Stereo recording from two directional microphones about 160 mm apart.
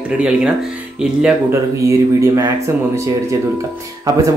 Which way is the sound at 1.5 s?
20° right (ahead or behind).